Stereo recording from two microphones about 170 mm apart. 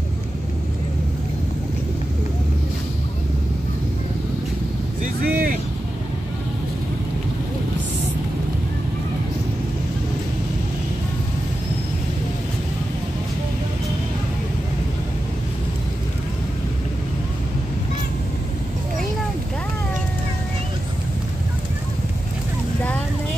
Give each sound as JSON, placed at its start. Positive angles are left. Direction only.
{"t": 5.0, "sound": "vehicle", "side_deg": -60}